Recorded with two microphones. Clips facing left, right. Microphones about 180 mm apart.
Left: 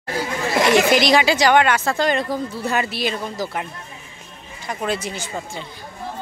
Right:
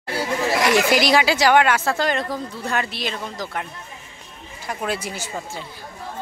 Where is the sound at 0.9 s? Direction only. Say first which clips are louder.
Left 2 dB; 5° right (ahead or behind).